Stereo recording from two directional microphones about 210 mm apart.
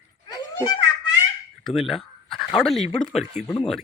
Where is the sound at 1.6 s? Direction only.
Centre (ahead or behind).